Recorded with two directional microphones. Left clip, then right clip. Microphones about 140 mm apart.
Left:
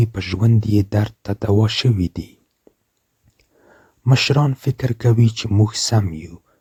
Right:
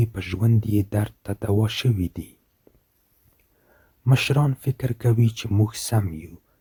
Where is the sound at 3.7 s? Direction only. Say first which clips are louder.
Left 4 dB; 30° left (ahead or behind).